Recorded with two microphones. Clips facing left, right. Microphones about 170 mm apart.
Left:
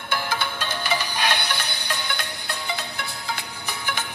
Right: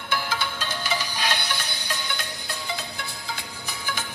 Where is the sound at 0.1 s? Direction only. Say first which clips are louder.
Left 1 dB; 55° left (ahead or behind).